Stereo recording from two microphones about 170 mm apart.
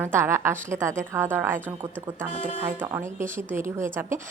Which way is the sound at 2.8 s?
15° right (ahead or behind).